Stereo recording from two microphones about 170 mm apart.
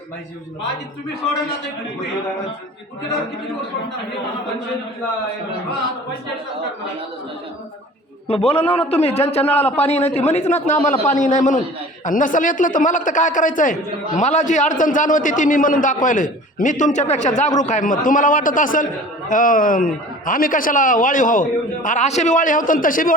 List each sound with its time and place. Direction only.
8.3 s a man's voice: 35° left (ahead or behind); by 23.1 s 55° left (ahead or behind)